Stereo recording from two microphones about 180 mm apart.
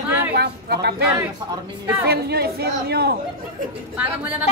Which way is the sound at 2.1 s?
60° right (ahead or behind).